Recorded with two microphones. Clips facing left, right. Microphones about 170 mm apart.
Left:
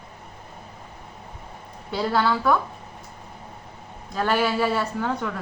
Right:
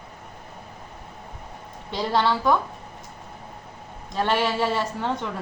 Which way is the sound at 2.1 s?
25° right (ahead or behind).